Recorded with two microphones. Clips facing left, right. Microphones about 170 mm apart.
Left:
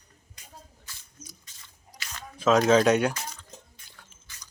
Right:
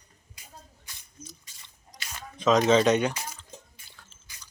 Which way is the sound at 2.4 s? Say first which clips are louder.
Left 1 dB; 5° left (ahead or behind).